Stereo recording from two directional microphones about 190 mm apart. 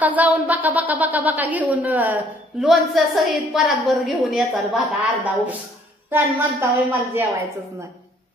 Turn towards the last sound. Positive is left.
turn(degrees=-10)  # may be behind; listen again after turning